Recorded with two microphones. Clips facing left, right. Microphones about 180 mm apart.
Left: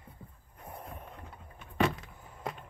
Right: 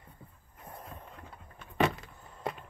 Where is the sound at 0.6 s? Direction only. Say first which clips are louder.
Left 2 dB; 15° left (ahead or behind).